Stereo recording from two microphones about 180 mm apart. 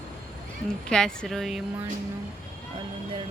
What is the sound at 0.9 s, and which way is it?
Speech, centre (ahead or behind).